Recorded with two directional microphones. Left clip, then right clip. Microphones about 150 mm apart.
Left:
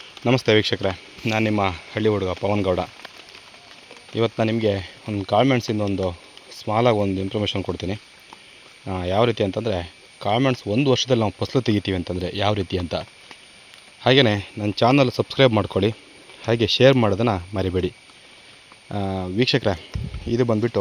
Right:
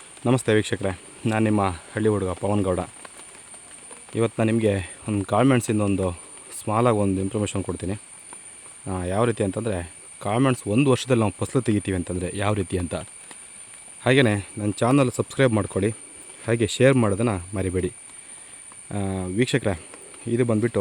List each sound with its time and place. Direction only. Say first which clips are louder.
0.3 s speech: left 3 dB; 15° right (ahead or behind)
4.1 s speech: left 1 dB; 20° right (ahead or behind)